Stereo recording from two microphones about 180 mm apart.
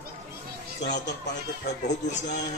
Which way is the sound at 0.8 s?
70° left (ahead or behind).